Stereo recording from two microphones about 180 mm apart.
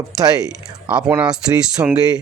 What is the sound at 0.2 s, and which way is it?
Speech, 20° right (ahead or behind).